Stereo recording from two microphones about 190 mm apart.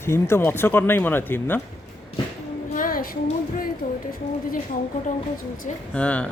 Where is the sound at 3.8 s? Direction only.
50° left (ahead or behind).